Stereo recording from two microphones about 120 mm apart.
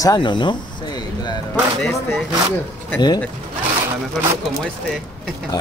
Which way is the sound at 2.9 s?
35° left (ahead or behind).